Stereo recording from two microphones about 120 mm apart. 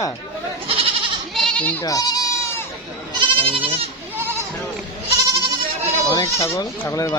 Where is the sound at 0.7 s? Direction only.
50° right (ahead or behind).